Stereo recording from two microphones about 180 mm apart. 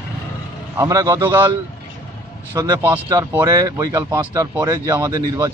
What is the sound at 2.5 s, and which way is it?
A man's voice, 20° right (ahead or behind).